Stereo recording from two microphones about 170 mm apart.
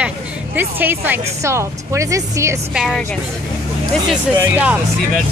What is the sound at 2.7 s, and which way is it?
Speech, 5° right (ahead or behind).